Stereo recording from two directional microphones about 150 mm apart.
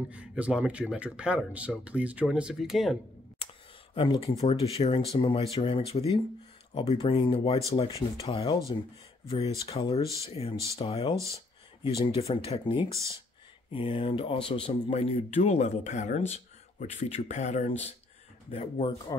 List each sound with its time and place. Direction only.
0.1 s speech: 10° right (ahead or behind)
3.9 s speech: 35° left (ahead or behind)